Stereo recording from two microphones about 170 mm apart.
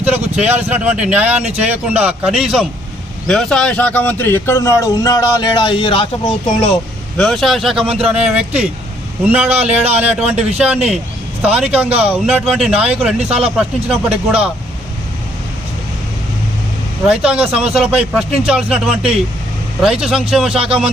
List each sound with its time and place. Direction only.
0.0 s speech: 10° right (ahead or behind); by 6.7 s 35° left (ahead or behind)
7.2 s speech: 5° left (ahead or behind)
17.1 s speech: 5° right (ahead or behind)